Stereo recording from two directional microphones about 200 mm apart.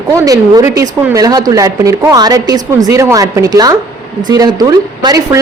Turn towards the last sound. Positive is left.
turn(degrees=-20)  # may be behind; listen again after turning